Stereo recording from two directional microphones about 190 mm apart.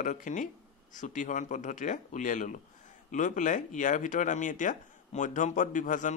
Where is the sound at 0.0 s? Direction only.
40° left (ahead or behind).